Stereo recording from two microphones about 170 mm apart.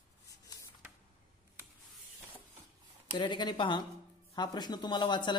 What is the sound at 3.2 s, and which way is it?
Speech, 25° left (ahead or behind).